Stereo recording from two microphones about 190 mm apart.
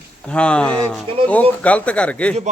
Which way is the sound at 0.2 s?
5° left (ahead or behind).